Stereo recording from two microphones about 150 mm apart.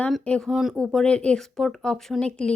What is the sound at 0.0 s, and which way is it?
Speech, 5° left (ahead or behind).